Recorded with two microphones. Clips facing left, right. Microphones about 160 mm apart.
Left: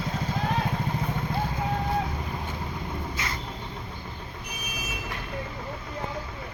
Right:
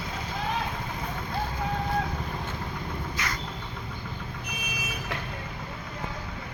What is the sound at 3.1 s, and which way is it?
Vehicle, 25° left (ahead or behind).